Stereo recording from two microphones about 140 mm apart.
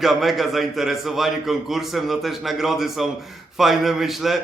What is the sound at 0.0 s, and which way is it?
Speech, centre (ahead or behind).